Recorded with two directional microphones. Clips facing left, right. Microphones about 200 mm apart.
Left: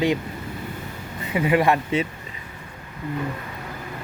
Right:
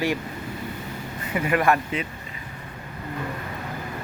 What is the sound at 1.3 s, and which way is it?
Speech, 20° left (ahead or behind).